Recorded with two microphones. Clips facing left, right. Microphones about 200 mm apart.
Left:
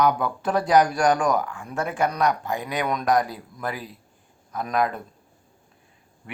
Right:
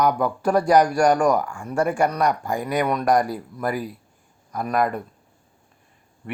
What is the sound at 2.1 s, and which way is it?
Speech, centre (ahead or behind).